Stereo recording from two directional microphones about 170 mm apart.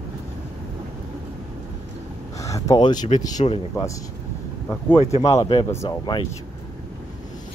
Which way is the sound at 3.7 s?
15° left (ahead or behind).